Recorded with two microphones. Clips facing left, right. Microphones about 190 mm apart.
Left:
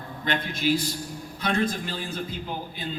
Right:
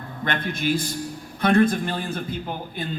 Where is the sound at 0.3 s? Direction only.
50° right (ahead or behind).